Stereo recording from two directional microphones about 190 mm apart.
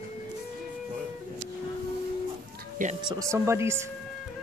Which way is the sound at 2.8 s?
45° right (ahead or behind).